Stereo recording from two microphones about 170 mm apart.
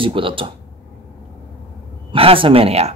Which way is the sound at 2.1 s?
30° right (ahead or behind).